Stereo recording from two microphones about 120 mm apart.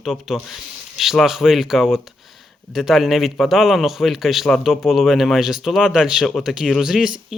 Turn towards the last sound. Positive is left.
turn(degrees=-5)  # may be behind; listen again after turning